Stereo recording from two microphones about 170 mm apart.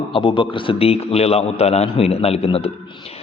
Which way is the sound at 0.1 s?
30° left (ahead or behind).